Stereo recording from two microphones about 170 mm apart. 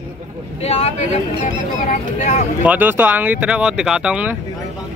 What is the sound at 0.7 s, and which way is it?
Speech, 40° left (ahead or behind).